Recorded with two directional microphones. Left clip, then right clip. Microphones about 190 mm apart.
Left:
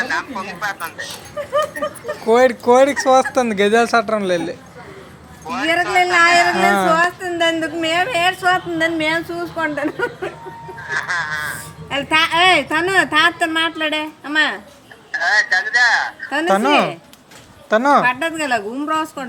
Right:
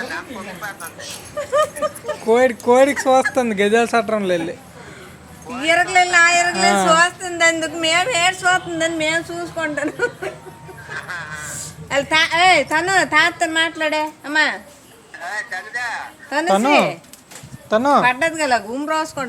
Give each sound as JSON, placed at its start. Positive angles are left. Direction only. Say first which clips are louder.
{"t": 0.1, "sound": "speech", "louder": "left 6 dB", "side_deg": 45}
{"t": 2.2, "sound": "a woman's voice", "louder": "left 2 dB", "side_deg": 5}
{"t": 5.5, "sound": "a sound", "louder": "left 6 dB", "side_deg": 45}
{"t": 6.0, "sound": "a woman's voice", "louder": "left 3 dB", "side_deg": 15}
{"t": 10.8, "sound": "a sound", "louder": "left 8 dB", "side_deg": 40}
{"t": 11.9, "sound": "a woman's voice", "louder": "even", "side_deg": -5}
{"t": 15.1, "sound": "speech", "louder": "left 11 dB", "side_deg": 35}
{"t": 16.3, "sound": "a woman's voice", "louder": "even", "side_deg": 0}
{"t": 18.1, "sound": "speech", "louder": "right 2 dB", "side_deg": -5}